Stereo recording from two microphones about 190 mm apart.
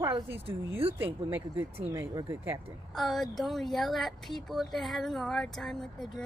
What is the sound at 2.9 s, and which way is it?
Speech, centre (ahead or behind).